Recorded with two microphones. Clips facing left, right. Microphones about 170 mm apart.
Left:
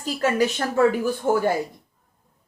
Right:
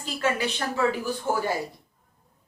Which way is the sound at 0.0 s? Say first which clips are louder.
Left 5 dB; 40° left (ahead or behind).